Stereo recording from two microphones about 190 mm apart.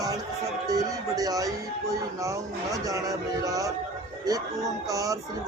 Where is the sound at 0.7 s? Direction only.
20° right (ahead or behind).